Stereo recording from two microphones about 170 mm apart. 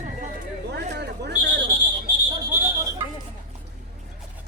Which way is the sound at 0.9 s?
80° right.